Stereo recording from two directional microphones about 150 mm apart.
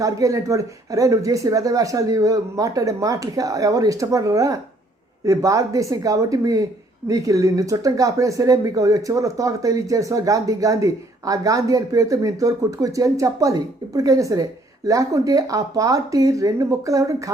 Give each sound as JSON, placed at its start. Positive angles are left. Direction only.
{"t": 0.0, "sound": "speech", "side_deg": -20}